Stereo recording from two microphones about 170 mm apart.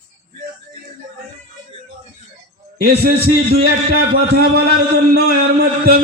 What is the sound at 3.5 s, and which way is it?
Speech, 65° right (ahead or behind).